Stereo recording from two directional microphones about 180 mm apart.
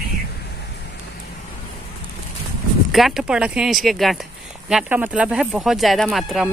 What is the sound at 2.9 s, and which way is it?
Speech, centre (ahead or behind).